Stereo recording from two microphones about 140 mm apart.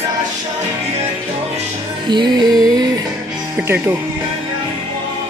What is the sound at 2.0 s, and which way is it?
Music, 30° right (ahead or behind).